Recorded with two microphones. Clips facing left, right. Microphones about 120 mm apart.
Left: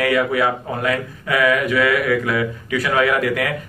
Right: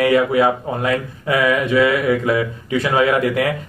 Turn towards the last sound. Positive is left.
turn(degrees=-25)  # may be behind; listen again after turning